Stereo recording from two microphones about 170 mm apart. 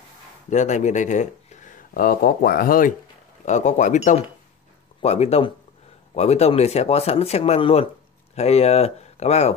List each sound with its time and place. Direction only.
0.5 s speech: 45° left (ahead or behind)
3.4 s speech: 45° left (ahead or behind)